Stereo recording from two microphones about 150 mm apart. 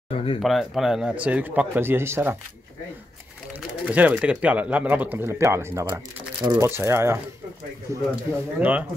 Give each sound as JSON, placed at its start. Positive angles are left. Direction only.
{"t": 0.1, "sound": "speech", "side_deg": 40}
{"t": 0.4, "sound": "speech", "side_deg": 0}
{"t": 3.5, "sound": "speech", "side_deg": -10}
{"t": 6.4, "sound": "speech", "side_deg": -30}
{"t": 6.7, "sound": "speech", "side_deg": -15}